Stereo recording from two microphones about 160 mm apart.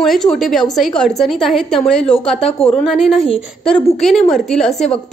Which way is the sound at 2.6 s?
35° left (ahead or behind).